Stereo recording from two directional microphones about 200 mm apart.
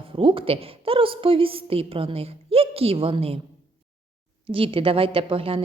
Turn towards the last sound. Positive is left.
turn(degrees=-25)  # may be behind; listen again after turning